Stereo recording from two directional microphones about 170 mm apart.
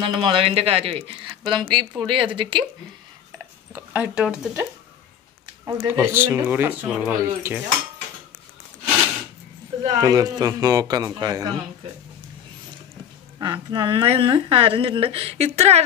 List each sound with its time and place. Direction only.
0.0 s speech: 30° right (ahead or behind)
3.7 s speech: 10° right (ahead or behind)
5.7 s speech: 15° right (ahead or behind)
9.9 s speech: 20° right (ahead or behind)
13.4 s speech: 25° right (ahead or behind)